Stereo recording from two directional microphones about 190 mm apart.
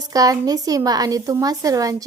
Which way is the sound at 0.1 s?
20° right (ahead or behind).